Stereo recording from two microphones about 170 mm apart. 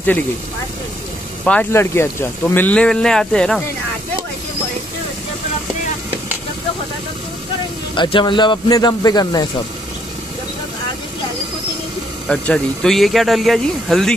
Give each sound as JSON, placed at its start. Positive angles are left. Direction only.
{"t": 1.4, "sound": "speech", "side_deg": 10}
{"t": 7.9, "sound": "speech", "side_deg": 30}
{"t": 12.3, "sound": "speech", "side_deg": 5}